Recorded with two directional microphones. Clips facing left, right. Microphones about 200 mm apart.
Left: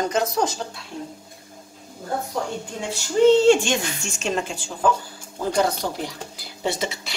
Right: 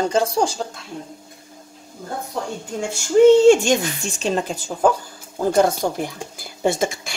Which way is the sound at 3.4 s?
45° right (ahead or behind).